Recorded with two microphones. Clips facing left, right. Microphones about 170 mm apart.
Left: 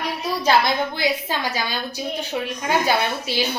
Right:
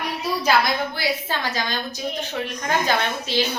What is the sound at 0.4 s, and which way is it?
Speech, 25° left (ahead or behind).